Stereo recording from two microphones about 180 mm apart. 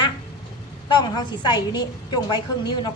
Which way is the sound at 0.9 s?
25° left (ahead or behind).